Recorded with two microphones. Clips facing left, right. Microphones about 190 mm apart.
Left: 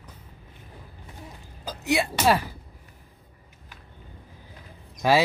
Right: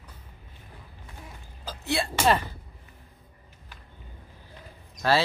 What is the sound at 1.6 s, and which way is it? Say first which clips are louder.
Speech: left 4 dB; 15° left (ahead or behind).